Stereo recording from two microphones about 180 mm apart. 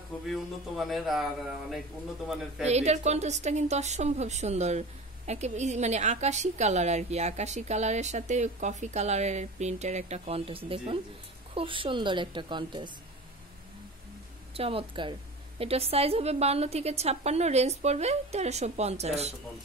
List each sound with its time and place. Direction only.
0.3 s a man's voice: centre (ahead or behind)
2.6 s a woman's voice: 40° right (ahead or behind)
14.5 s a woman's voice: 30° right (ahead or behind)